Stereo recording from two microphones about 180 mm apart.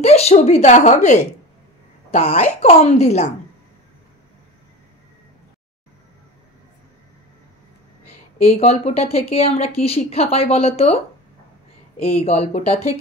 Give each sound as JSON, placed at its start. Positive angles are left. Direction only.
{"t": 0.0, "sound": "speech", "side_deg": 35}
{"t": 8.5, "sound": "speech", "side_deg": 35}
{"t": 12.2, "sound": "speech", "side_deg": 35}